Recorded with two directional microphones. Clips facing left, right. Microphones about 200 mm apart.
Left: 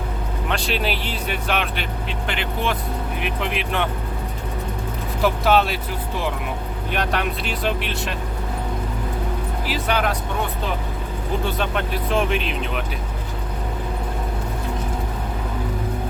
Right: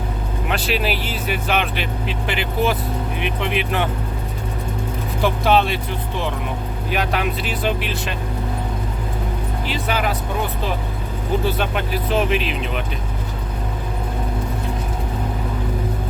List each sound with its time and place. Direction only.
0.4 s speech: 5° right (ahead or behind)
5.2 s speech: centre (ahead or behind)
9.6 s speech: centre (ahead or behind)
11.4 s speech: 5° right (ahead or behind)